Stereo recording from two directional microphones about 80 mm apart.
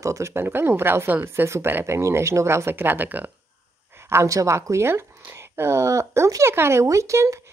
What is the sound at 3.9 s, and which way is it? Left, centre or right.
Speech, right.